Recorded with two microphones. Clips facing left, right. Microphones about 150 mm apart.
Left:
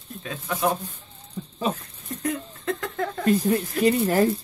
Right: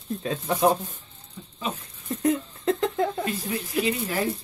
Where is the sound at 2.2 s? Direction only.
25° right (ahead or behind).